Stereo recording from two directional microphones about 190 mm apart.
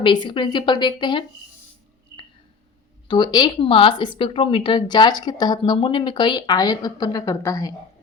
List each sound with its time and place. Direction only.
0.0 s speech: 25° left (ahead or behind)
3.1 s speech: 25° left (ahead or behind)